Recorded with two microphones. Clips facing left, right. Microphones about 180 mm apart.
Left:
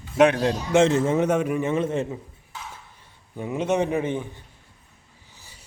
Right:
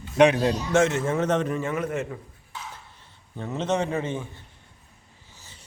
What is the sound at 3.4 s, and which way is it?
Speech, 10° left (ahead or behind).